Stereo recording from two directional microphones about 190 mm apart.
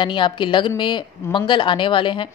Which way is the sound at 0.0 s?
25° left (ahead or behind).